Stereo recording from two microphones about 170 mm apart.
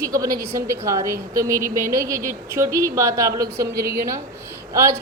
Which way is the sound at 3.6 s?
65° right (ahead or behind).